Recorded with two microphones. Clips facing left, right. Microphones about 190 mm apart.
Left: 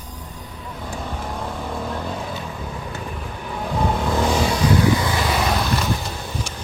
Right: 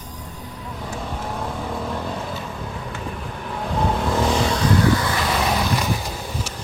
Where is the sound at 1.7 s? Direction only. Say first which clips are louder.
Even; centre (ahead or behind).